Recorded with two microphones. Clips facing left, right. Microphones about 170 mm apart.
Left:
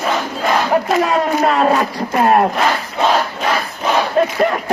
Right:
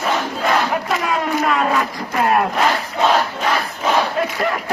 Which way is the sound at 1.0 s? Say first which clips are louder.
Left 4 dB; 35° left (ahead or behind).